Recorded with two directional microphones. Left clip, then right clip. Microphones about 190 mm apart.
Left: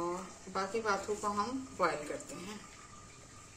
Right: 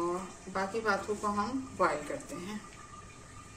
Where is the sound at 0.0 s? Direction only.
45° left (ahead or behind).